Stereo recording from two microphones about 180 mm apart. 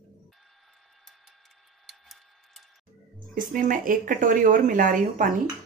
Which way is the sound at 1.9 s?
Centre (ahead or behind).